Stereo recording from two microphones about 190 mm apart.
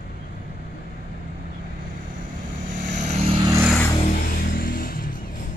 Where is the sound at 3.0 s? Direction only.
35° right (ahead or behind).